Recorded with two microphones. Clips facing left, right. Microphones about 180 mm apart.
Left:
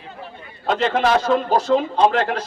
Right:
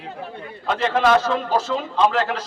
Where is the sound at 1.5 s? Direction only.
50° left (ahead or behind).